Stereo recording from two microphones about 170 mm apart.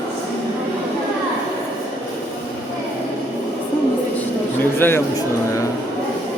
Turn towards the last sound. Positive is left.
turn(degrees=15)  # may be behind; listen again after turning